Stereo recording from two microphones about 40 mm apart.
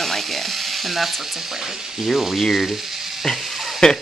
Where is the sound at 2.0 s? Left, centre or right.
Centre.